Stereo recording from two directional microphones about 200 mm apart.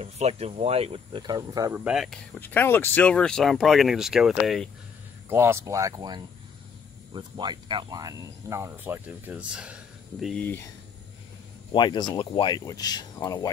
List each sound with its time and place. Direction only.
0.0 s speech: 30° right (ahead or behind)
1.9 s speech: centre (ahead or behind)
2.4 s speech: 10° left (ahead or behind)
5.3 s speech: 10° right (ahead or behind)
10.2 s speech: 5° left (ahead or behind)
11.7 s speech: 20° left (ahead or behind)